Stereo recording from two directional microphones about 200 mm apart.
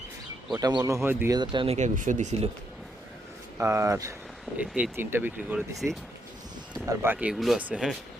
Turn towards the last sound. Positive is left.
turn(degrees=-5)  # may be behind; listen again after turning